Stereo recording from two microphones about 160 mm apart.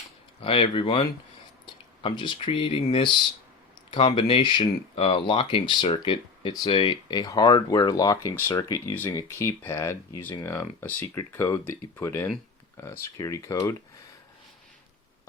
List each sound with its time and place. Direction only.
0.4 s speech: 35° left (ahead or behind); by 13.7 s 20° left (ahead or behind)